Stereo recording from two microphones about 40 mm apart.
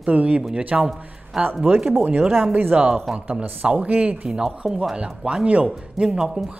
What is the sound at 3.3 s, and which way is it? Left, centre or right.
Speech, right.